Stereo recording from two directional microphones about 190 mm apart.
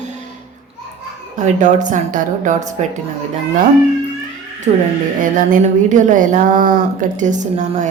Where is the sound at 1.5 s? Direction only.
40° right (ahead or behind).